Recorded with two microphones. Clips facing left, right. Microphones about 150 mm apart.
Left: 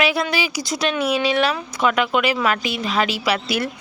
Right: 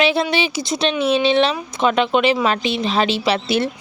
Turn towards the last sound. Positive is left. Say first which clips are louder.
# right 3 dB
turn(degrees=-25)  # may be behind; listen again after turning